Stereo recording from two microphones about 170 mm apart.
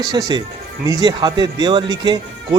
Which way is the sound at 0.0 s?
25° right (ahead or behind).